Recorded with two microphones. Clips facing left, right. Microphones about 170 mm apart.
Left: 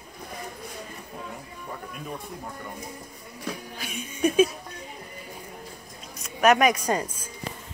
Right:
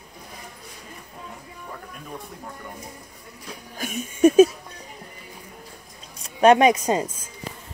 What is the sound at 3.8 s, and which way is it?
Music, 45° right (ahead or behind).